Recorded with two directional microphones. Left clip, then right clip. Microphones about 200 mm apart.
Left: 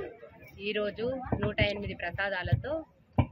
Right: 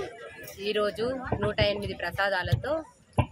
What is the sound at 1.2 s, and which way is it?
Speech, 55° right (ahead or behind).